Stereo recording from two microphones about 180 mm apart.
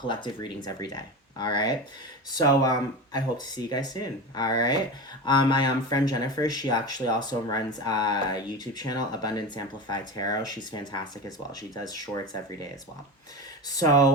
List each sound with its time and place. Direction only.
0.1 s speech: 25° left (ahead or behind)
11.9 s speech: 20° left (ahead or behind)
13.7 s speech: 20° left (ahead or behind)